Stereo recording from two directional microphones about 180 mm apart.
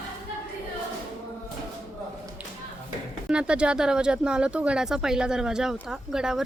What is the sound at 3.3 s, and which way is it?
Speech, 5° right (ahead or behind).